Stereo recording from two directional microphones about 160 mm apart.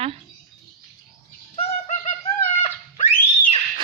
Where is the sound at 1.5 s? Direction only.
45° left (ahead or behind).